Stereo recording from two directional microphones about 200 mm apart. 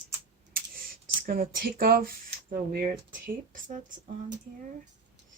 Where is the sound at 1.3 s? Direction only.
45° right (ahead or behind).